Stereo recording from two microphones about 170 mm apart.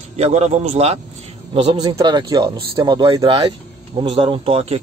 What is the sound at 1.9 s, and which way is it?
Speech, 25° right (ahead or behind).